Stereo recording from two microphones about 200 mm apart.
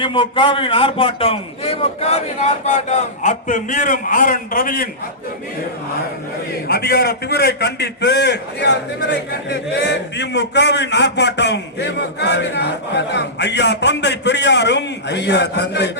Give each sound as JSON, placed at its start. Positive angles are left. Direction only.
{"t": 0.0, "sound": "a man's voice", "side_deg": 25}
{"t": 6.7, "sound": "a man's voice", "side_deg": 55}